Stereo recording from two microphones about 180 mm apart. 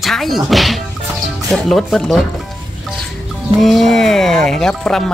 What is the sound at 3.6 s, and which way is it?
Speech, centre (ahead or behind).